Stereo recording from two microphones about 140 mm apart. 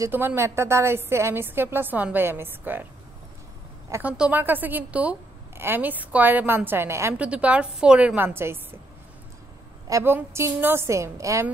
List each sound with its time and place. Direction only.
0.0 s a woman's voice: 15° right (ahead or behind)
3.9 s a woman's voice: 10° right (ahead or behind)
9.8 s a woman's voice: 20° right (ahead or behind)